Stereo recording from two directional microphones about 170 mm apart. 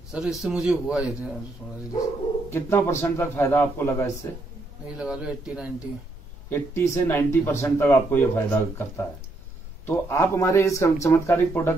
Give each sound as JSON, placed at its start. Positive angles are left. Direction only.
{"t": 0.1, "sound": "a man's voice", "side_deg": 0}
{"t": 2.5, "sound": "speech", "side_deg": 15}
{"t": 4.8, "sound": "a man's voice", "side_deg": -5}
{"t": 6.5, "sound": "speech", "side_deg": 15}